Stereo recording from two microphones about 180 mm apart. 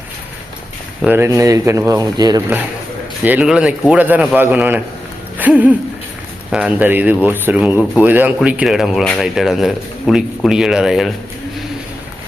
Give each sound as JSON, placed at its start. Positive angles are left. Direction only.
{"t": 1.0, "sound": "a man's voice", "side_deg": -15}
{"t": 3.2, "sound": "a man's voice", "side_deg": -5}